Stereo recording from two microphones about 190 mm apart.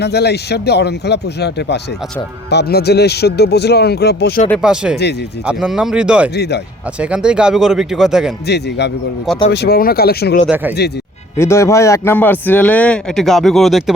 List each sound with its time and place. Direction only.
0.0 s speech: 60° left (ahead or behind)
4.6 s speech: 5° right (ahead or behind)
6.3 s speech: 60° left (ahead or behind)
7.0 s speech: 5° right (ahead or behind)
8.4 s speech: 60° left (ahead or behind)
10.5 s speech: 10° right (ahead or behind)
11.3 s a man's voice: 15° left (ahead or behind)